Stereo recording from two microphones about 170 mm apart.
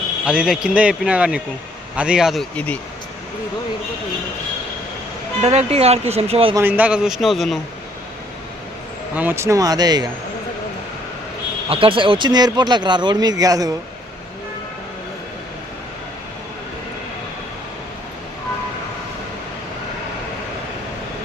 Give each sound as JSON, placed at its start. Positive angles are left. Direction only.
{"t": 0.3, "sound": "a man's voice", "side_deg": -5}
{"t": 5.4, "sound": "speech", "side_deg": -40}
{"t": 6.5, "sound": "a man's voice", "side_deg": -15}
{"t": 9.1, "sound": "speech", "side_deg": -10}
{"t": 11.7, "sound": "speech", "side_deg": -30}